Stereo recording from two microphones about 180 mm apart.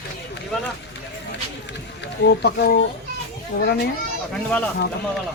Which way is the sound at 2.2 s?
70° left (ahead or behind).